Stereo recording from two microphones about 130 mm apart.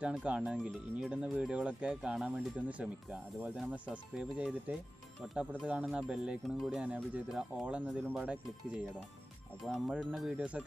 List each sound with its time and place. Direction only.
0.0 s speech: 10° right (ahead or behind)
7.8 s speech: 5° left (ahead or behind)
8.1 s speech: 10° right (ahead or behind)
9.7 s speech: centre (ahead or behind)